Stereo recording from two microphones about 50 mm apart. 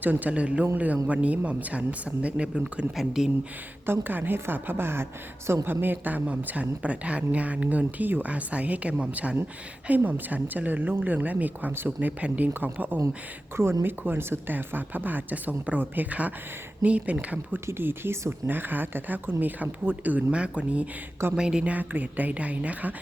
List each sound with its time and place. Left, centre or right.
0.0 s speech: right
2.9 s speech: centre
3.8 s a woman's voice: right
11.7 s a woman's voice: right
11.9 s speech: right
13.6 s speech: right
14.0 s a woman's voice: right
17.7 s a woman's voice: right
20.3 s speech: right
21.7 s speech: right